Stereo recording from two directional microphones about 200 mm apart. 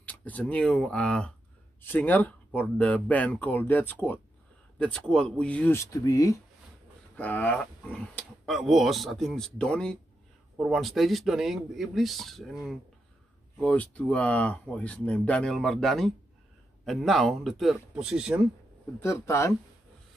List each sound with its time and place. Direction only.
0.0 s speech: 10° left (ahead or behind)
18.9 s speech: 15° left (ahead or behind)